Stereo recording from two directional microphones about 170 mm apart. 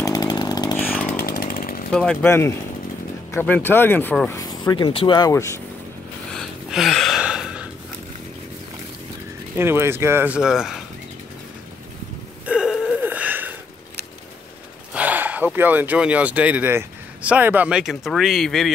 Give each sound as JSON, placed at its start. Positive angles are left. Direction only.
{"t": 0.0, "sound": "chainsaw", "side_deg": 20}
{"t": 1.0, "sound": "chainsaw", "side_deg": 55}
{"t": 1.9, "sound": "speech", "side_deg": 5}
{"t": 4.4, "sound": "speech", "side_deg": 25}
{"t": 5.3, "sound": "speech", "side_deg": 15}
{"t": 6.3, "sound": "a sound", "side_deg": 0}
{"t": 9.6, "sound": "speech", "side_deg": -15}
{"t": 12.4, "sound": "a sound", "side_deg": -5}
{"t": 15.0, "sound": "speech", "side_deg": -10}